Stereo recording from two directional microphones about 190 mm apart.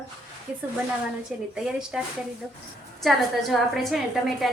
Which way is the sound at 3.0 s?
Centre (ahead or behind).